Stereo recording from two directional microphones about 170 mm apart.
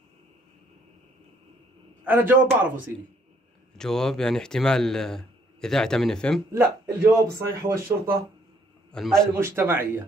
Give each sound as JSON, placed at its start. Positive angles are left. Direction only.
{"t": 2.0, "sound": "speech", "side_deg": -10}
{"t": 3.7, "sound": "speech", "side_deg": 5}
{"t": 6.5, "sound": "speech", "side_deg": -15}
{"t": 8.9, "sound": "speech", "side_deg": 5}
{"t": 9.4, "sound": "speech", "side_deg": -15}